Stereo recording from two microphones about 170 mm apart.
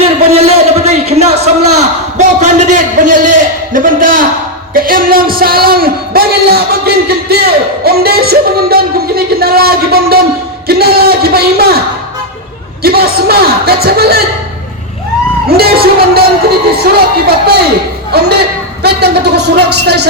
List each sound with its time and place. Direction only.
0.3 s a sound: 35° right (ahead or behind); by 11.8 s 65° right (ahead or behind)
12.8 s speech: 65° right (ahead or behind)
15.4 s a man's voice: 65° right (ahead or behind)